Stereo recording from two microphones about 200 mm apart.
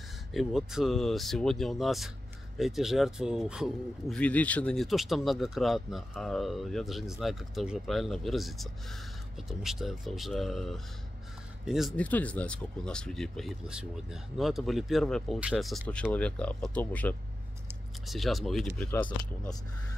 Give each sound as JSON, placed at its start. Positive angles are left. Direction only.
{"t": 0.3, "sound": "speech", "side_deg": 0}